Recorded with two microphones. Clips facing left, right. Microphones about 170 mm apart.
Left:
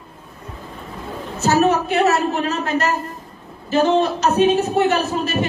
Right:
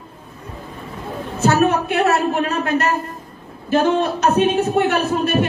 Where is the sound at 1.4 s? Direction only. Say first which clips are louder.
Even; 55° right (ahead or behind).